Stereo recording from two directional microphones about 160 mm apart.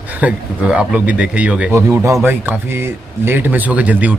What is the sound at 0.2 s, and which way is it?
Speech, 10° right (ahead or behind).